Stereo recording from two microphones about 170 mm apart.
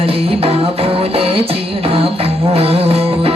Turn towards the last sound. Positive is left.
turn(degrees=-35)  # may be behind; listen again after turning